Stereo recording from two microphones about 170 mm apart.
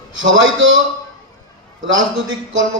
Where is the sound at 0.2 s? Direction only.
90° right.